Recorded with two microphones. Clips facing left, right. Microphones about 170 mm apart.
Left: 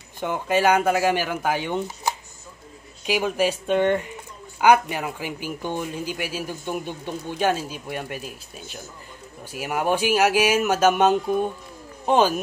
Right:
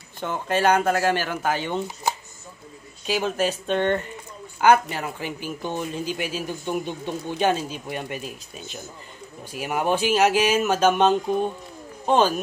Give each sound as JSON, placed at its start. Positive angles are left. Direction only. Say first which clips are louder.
{"t": 0.2, "sound": "speech", "louder": "left 1 dB", "side_deg": 10}
{"t": 3.1, "sound": "speech", "louder": "left 1 dB", "side_deg": 10}